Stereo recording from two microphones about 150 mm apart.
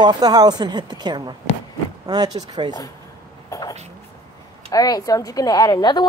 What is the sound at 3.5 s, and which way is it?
Speech, 20° left (ahead or behind).